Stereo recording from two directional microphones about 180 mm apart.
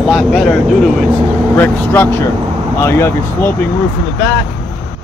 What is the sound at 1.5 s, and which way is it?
Speech, 10° left (ahead or behind).